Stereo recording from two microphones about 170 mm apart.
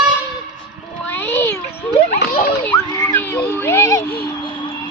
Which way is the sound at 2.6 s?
10° left (ahead or behind).